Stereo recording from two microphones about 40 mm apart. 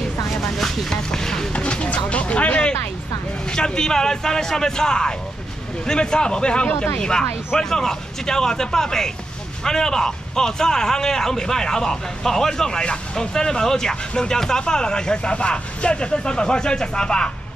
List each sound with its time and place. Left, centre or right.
0.3 s vehicle: centre
1.5 s a sound: left
3.4 s speech: left